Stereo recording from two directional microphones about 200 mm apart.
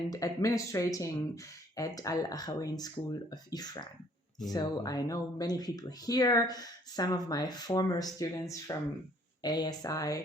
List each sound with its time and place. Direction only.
0.1 s speech: 15° left (ahead or behind)